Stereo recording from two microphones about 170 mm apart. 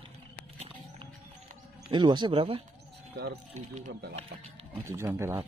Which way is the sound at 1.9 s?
25° right (ahead or behind).